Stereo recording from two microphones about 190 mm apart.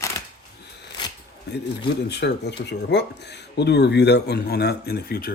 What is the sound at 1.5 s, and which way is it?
Speech, 60° left (ahead or behind).